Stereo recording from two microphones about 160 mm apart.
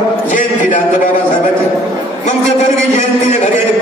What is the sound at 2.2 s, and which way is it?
Speech, 45° left (ahead or behind).